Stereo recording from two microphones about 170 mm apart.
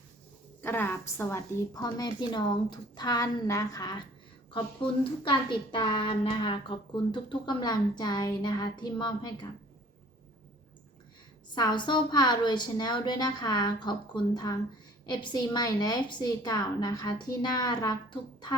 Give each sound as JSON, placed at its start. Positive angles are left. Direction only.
{"t": 0.6, "sound": "a woman's voice", "side_deg": 15}
{"t": 11.5, "sound": "a woman's voice", "side_deg": 25}